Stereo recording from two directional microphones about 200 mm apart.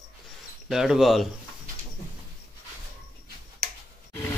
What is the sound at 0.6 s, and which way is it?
Speech, centre (ahead or behind).